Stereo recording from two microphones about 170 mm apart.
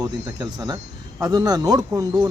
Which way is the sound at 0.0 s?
25° right (ahead or behind).